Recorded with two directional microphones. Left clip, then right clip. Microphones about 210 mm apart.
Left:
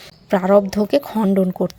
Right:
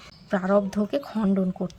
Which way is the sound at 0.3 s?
20° left (ahead or behind).